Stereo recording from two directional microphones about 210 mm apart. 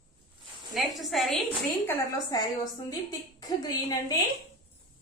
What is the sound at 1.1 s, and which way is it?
Speech, centre (ahead or behind).